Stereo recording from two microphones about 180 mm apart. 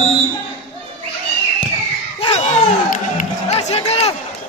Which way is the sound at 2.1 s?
35° left (ahead or behind).